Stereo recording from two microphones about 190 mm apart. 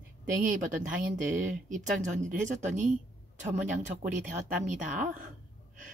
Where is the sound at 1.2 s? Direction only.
40° right (ahead or behind).